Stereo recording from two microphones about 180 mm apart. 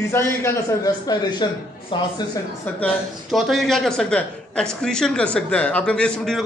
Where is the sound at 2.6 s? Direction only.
5° left (ahead or behind).